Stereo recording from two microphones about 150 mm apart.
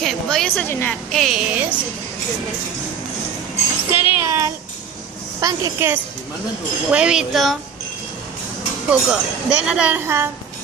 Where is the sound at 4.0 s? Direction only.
15° right (ahead or behind).